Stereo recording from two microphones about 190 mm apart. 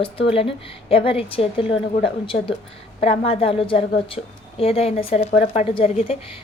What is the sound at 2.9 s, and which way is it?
A woman's voice, 35° left (ahead or behind).